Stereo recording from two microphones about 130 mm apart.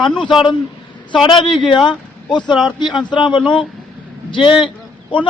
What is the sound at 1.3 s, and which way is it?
Speech, 35° left (ahead or behind).